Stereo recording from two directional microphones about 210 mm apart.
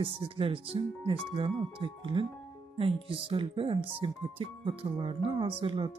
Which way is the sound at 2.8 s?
25° right (ahead or behind).